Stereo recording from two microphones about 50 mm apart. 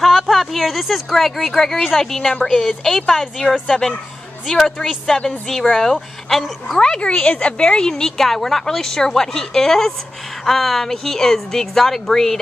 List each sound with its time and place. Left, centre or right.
0.0 s a woman's voice: centre
6.8 s a woman's voice: centre